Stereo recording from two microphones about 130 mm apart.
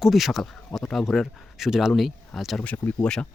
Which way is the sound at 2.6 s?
15° left (ahead or behind).